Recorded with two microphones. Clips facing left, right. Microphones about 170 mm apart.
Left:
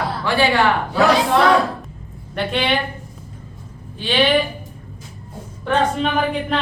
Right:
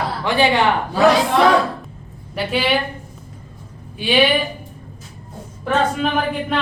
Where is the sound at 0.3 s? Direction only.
20° right (ahead or behind).